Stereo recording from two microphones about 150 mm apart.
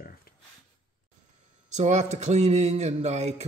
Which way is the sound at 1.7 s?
50° right (ahead or behind).